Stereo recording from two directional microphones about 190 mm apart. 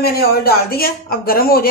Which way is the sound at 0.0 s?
55° left (ahead or behind).